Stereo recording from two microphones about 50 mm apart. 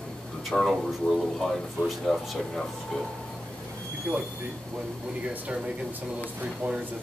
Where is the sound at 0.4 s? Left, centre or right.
Centre.